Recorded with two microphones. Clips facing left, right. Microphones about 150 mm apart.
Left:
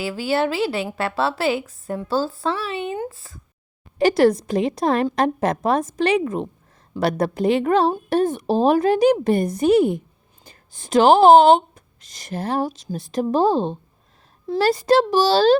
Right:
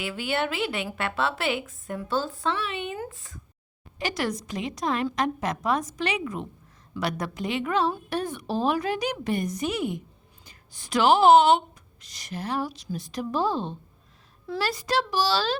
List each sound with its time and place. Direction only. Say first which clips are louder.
0.0 s a woman's voice: left 7 dB; 35° left (ahead or behind)
7.3 s a woman's voice: left 8 dB; 40° left (ahead or behind)
10.8 s speech: left 7 dB; 45° left (ahead or behind)
11.2 s a woman's voice: left 4 dB; 30° left (ahead or behind)